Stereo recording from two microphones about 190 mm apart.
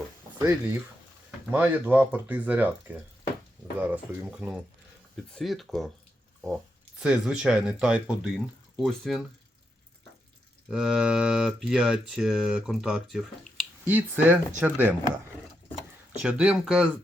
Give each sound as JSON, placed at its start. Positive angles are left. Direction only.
{"t": 0.3, "sound": "speech", "side_deg": -20}
{"t": 7.0, "sound": "speech", "side_deg": -5}
{"t": 10.7, "sound": "speech", "side_deg": 0}
{"t": 16.2, "sound": "speech", "side_deg": -5}